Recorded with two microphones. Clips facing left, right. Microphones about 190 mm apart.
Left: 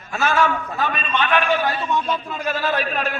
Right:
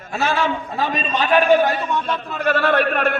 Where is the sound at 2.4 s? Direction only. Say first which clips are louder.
Right 8 dB; 65° right (ahead or behind).